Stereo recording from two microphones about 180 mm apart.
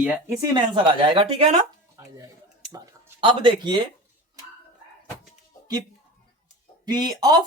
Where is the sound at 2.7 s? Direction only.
20° right (ahead or behind).